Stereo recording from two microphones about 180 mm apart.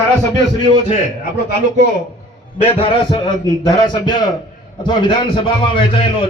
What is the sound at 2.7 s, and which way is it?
A man's voice, 25° left (ahead or behind).